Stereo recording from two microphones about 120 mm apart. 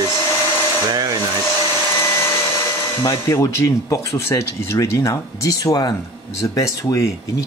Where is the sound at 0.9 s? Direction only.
30° right (ahead or behind).